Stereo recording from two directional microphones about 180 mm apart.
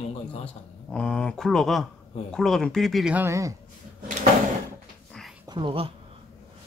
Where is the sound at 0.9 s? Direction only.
5° left (ahead or behind); by 3.5 s 15° right (ahead or behind).